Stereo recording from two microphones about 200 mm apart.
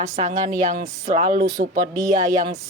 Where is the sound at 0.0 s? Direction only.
35° right (ahead or behind).